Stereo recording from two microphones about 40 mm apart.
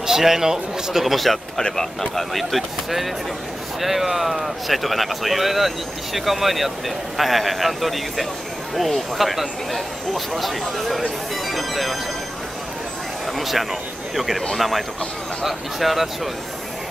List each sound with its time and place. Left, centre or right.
0.0 s a man's voice: centre
13.4 s speech: centre